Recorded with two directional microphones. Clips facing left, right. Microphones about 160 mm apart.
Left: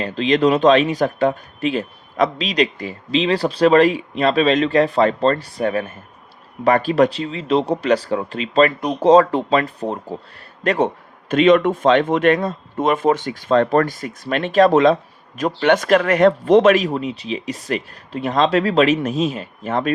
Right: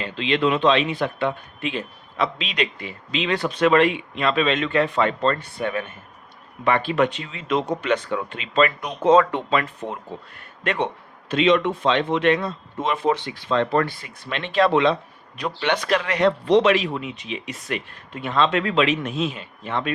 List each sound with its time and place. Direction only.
0.0 s speech: 40° left (ahead or behind)